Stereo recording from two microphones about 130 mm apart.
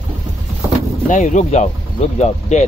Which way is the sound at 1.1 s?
70° left (ahead or behind).